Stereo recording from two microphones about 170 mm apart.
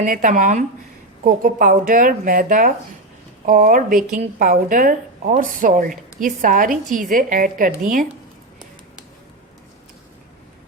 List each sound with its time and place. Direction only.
0.0 s a woman's voice: 50° right (ahead or behind)